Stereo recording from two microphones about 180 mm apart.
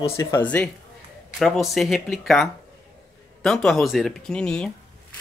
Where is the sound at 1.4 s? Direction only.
Centre (ahead or behind).